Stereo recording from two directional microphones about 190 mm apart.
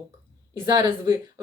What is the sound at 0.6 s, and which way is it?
Speech, 15° right (ahead or behind).